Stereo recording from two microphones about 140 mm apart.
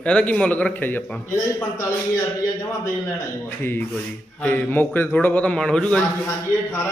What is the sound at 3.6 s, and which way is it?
Speech, 15° left (ahead or behind).